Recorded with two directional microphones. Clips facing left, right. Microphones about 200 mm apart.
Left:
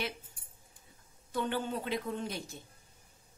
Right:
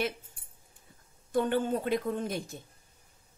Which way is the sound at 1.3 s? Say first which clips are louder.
Right 6 dB; 50° right (ahead or behind).